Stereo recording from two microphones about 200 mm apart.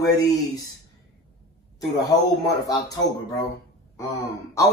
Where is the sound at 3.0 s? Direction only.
65° left (ahead or behind).